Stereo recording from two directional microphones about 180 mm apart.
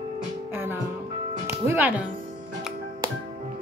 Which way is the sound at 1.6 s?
10° right (ahead or behind).